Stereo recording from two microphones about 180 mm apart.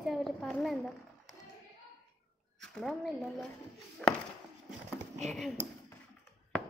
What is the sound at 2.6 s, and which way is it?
A woman's voice, centre (ahead or behind).